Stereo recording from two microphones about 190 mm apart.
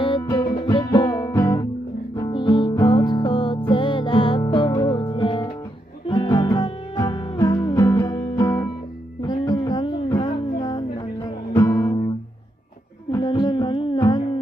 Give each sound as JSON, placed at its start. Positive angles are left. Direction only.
{"t": 0.0, "sound": "music", "side_deg": 20}